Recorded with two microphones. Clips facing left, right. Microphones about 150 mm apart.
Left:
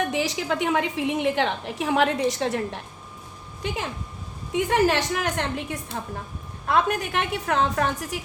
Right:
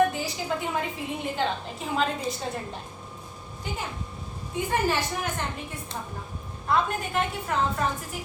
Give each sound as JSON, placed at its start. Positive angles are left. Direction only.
{"t": 0.1, "sound": "a woman's voice", "side_deg": 90}